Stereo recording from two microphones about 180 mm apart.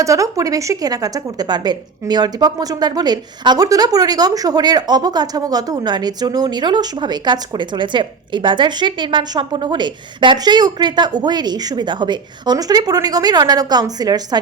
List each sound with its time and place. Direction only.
0.0 s speech: 20° right (ahead or behind)